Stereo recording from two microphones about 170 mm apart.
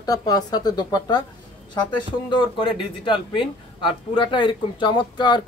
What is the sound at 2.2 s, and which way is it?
Speech, 30° left (ahead or behind).